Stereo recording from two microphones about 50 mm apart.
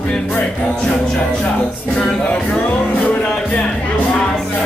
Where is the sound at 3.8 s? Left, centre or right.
Left.